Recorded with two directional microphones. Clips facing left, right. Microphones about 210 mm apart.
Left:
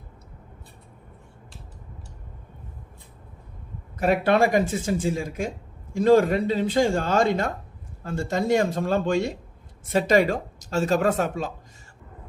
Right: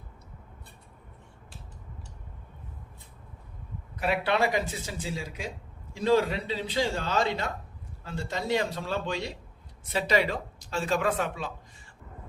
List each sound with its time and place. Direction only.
4.0 s speech: 45° left (ahead or behind)